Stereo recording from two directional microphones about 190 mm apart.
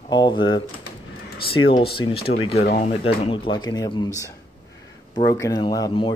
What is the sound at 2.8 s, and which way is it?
Speech, 30° left (ahead or behind).